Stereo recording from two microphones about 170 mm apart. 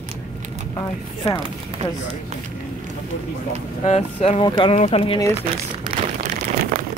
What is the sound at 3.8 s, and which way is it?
Speech, 40° left (ahead or behind).